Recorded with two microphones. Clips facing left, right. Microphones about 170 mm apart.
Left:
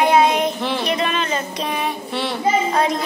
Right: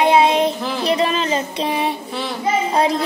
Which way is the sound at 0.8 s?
30° right (ahead or behind).